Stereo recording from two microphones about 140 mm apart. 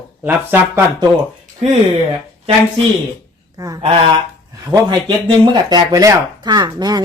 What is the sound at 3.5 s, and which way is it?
Speech, 25° right (ahead or behind).